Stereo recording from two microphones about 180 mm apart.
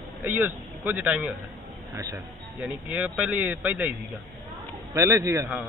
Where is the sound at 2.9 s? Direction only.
5° right (ahead or behind).